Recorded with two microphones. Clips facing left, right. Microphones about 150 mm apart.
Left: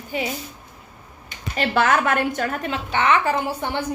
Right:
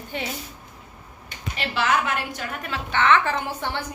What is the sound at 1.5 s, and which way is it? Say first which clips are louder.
A woman's voice: left 4 dB; 50° left (ahead or behind).